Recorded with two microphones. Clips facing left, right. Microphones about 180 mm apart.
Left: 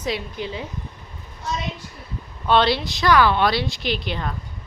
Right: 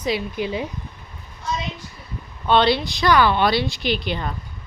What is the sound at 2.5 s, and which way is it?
Speech, centre (ahead or behind).